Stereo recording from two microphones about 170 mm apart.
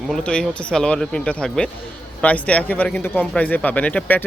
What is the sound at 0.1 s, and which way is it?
Speech, 5° left (ahead or behind).